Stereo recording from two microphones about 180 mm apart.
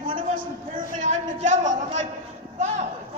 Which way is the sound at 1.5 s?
40° right (ahead or behind).